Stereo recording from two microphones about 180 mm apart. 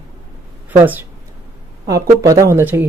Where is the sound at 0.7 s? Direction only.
10° right (ahead or behind).